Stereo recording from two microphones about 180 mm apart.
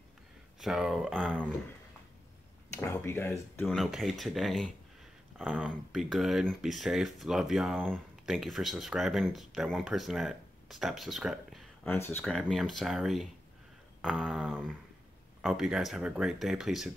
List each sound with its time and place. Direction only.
0.6 s speech: centre (ahead or behind)
2.8 s speech: 15° left (ahead or behind)
3.7 s speech: centre (ahead or behind)
11.9 s speech: 10° left (ahead or behind)